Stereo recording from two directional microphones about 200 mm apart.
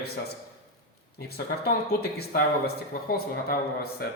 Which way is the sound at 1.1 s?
50° left (ahead or behind).